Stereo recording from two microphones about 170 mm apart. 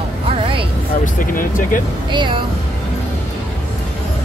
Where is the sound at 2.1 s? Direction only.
30° right (ahead or behind).